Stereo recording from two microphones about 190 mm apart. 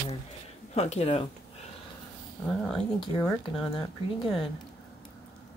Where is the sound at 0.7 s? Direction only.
35° left (ahead or behind).